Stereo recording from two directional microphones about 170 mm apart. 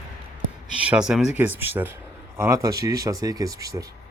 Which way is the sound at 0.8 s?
5° right (ahead or behind).